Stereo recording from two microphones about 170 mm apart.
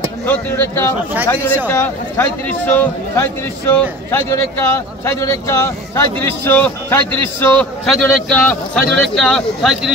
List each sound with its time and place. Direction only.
0.3 s a man's voice: 15° left (ahead or behind)